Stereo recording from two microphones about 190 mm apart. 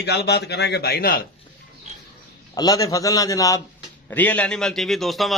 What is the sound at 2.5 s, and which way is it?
A man's voice, 20° left (ahead or behind).